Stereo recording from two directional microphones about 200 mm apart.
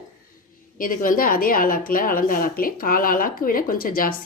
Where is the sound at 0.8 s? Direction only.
45° left (ahead or behind).